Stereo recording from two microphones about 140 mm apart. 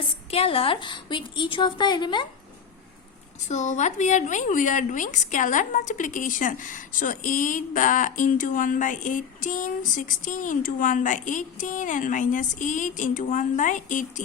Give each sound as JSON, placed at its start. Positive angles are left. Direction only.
{"t": 0.3, "sound": "a woman's voice", "side_deg": 45}
{"t": 3.5, "sound": "a woman's voice", "side_deg": 60}